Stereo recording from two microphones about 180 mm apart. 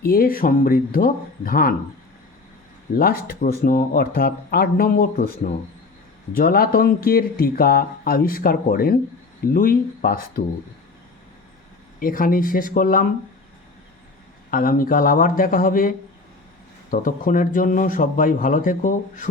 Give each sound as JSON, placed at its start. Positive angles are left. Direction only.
{"t": 0.0, "sound": "speech", "side_deg": 55}
{"t": 2.9, "sound": "speech", "side_deg": 55}
{"t": 11.9, "sound": "speech", "side_deg": 50}
{"t": 14.5, "sound": "speech", "side_deg": 50}